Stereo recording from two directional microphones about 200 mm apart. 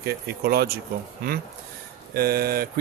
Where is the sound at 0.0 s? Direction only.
50° right (ahead or behind).